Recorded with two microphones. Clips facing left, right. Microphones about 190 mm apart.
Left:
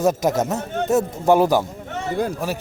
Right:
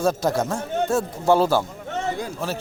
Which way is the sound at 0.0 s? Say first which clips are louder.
Left 2 dB; 20° left (ahead or behind).